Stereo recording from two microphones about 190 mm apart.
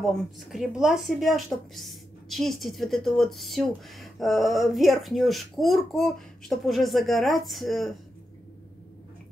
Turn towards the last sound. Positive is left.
turn(degrees=0)  # may be behind; listen again after turning